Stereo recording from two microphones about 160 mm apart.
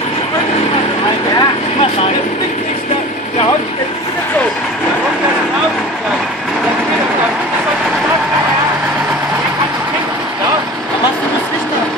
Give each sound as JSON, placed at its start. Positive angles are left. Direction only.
{"t": 1.4, "sound": "vehicle", "side_deg": 35}